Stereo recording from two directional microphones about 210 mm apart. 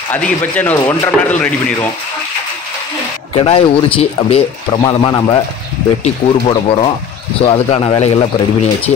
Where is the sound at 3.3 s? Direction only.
25° left (ahead or behind).